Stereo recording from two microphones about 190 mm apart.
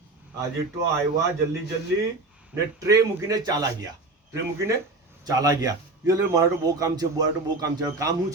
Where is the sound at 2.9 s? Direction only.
20° right (ahead or behind).